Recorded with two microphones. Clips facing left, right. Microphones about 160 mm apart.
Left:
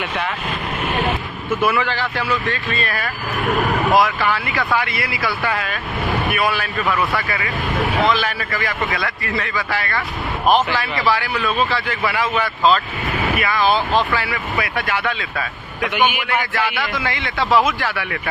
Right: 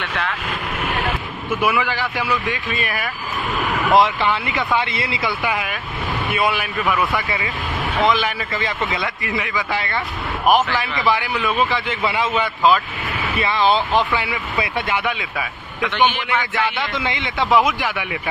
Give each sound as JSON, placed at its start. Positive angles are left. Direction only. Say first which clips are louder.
{"t": 1.6, "sound": "a man's voice", "louder": "left 1 dB", "side_deg": -10}
{"t": 6.8, "sound": "a man's voice", "louder": "even", "side_deg": -5}
{"t": 7.2, "sound": "a man's voice", "louder": "left 1 dB", "side_deg": -20}
{"t": 15.9, "sound": "a man's voice", "louder": "even", "side_deg": 10}
{"t": 16.5, "sound": "a man's voice", "louder": "even", "side_deg": -20}